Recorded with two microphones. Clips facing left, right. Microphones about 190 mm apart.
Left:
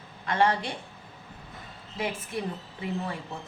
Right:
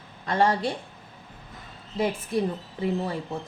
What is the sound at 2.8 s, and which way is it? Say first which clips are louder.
Speech: right 6 dB; 35° right (ahead or behind).